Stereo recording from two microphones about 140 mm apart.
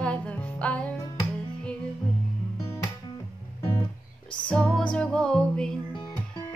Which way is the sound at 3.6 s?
35° left (ahead or behind).